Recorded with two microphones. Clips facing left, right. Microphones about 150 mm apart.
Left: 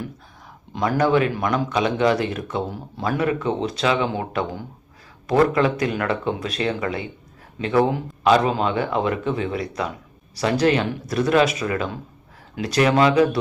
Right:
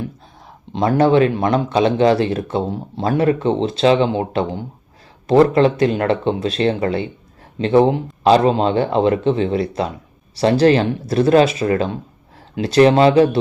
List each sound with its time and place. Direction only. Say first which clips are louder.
0.7 s speech: right 5 dB; 25° right (ahead or behind)